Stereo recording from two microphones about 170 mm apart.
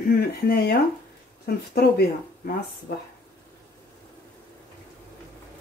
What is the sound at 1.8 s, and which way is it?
Speech, 70° left (ahead or behind).